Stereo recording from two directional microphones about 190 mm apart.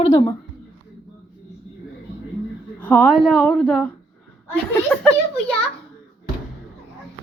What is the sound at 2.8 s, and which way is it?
A woman's voice, 5° left (ahead or behind).